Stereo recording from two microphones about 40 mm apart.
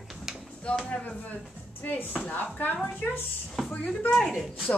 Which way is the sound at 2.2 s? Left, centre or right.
Left.